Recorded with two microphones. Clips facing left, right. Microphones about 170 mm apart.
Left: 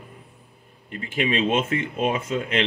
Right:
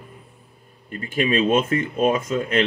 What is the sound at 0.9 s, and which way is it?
Speech, 20° left (ahead or behind).